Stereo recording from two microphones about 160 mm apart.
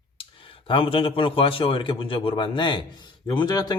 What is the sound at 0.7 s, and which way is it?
A man's voice, 35° left (ahead or behind).